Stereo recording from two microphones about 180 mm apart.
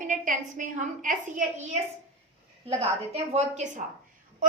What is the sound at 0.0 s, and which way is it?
A woman's voice, 45° right (ahead or behind).